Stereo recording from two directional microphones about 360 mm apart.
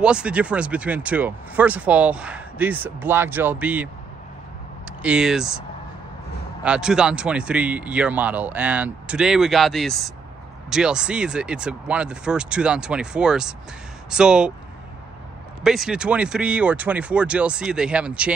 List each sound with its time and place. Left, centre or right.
0.0 s speech: centre
6.6 s speech: centre
15.6 s speech: centre